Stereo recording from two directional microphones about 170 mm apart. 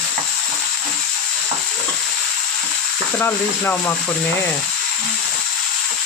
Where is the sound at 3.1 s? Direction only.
10° left (ahead or behind).